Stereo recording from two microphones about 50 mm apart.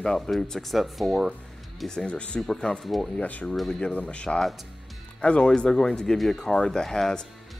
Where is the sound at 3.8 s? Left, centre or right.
Left.